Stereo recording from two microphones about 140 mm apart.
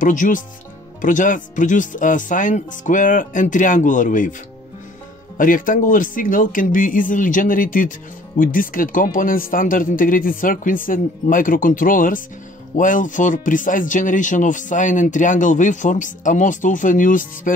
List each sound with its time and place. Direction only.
0.0 s speech: 70° left (ahead or behind)
5.4 s speech: 70° left (ahead or behind)